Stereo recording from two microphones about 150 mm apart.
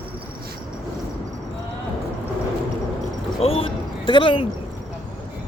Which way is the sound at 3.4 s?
40° left (ahead or behind).